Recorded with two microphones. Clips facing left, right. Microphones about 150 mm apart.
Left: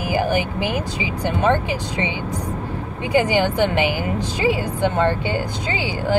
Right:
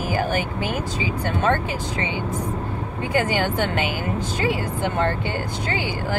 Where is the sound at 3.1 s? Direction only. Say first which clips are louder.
Left 4 dB; 15° left (ahead or behind).